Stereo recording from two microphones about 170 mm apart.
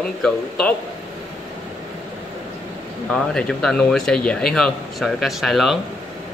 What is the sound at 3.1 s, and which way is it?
Speech, 5° left (ahead or behind).